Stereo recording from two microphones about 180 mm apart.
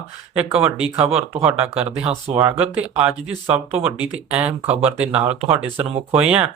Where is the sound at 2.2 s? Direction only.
25° right (ahead or behind).